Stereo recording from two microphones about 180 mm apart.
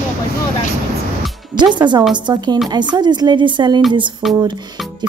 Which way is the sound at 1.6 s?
25° right (ahead or behind).